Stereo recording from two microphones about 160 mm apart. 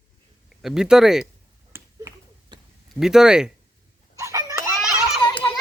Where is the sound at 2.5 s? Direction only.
30° right (ahead or behind).